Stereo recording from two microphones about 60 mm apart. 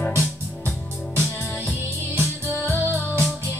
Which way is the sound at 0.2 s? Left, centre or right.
Left.